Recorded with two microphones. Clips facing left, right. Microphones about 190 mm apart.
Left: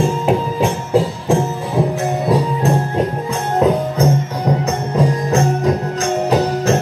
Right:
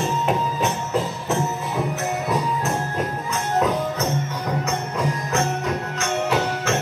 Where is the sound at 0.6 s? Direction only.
30° left (ahead or behind).